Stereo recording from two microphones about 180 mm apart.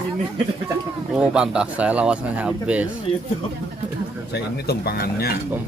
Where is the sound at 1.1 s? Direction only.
5° right (ahead or behind).